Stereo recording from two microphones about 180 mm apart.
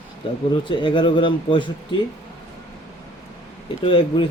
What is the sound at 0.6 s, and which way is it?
Speech, 30° left (ahead or behind).